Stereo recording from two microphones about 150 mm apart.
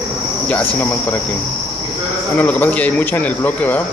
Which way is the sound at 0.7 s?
15° left (ahead or behind).